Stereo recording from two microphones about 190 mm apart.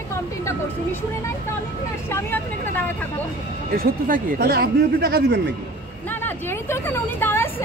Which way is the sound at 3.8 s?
45° right (ahead or behind).